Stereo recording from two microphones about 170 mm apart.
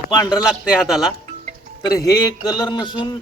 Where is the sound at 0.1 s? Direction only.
25° left (ahead or behind).